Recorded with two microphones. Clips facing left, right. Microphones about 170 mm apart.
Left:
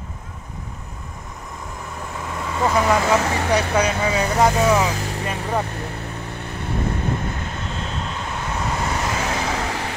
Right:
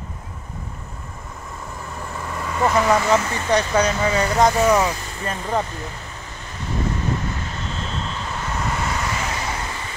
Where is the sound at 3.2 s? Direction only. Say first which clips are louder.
Left 5 dB; 75° left (ahead or behind).